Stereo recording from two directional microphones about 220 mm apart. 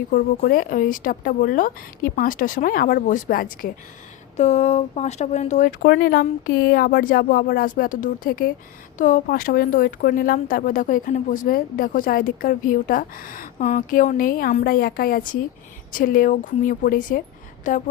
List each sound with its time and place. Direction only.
0.1 s a woman's voice: 40° left (ahead or behind)